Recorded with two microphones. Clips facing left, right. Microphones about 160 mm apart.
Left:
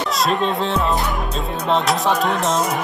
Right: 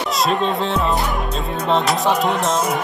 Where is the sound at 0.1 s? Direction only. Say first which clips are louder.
Right 1 dB; centre (ahead or behind).